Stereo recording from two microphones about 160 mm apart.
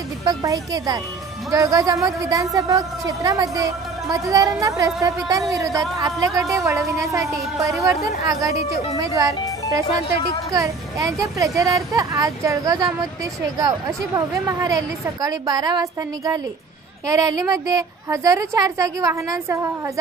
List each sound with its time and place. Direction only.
0.2 s a woman's voice: 20° right (ahead or behind)
10.5 s a woman's voice: 20° right (ahead or behind)